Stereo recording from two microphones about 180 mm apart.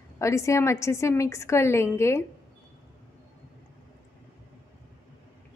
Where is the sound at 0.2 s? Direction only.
15° left (ahead or behind).